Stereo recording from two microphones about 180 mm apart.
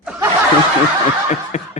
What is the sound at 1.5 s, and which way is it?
Speech, 40° left (ahead or behind).